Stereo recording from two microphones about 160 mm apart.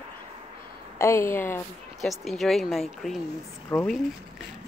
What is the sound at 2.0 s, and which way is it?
Speech, centre (ahead or behind).